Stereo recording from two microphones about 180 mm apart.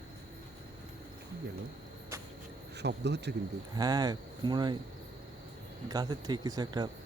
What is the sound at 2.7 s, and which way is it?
Speech, 70° right (ahead or behind).